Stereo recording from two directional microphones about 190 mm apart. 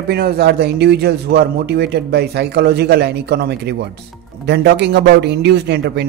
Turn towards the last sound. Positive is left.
turn(degrees=-60)  # may be behind; listen again after turning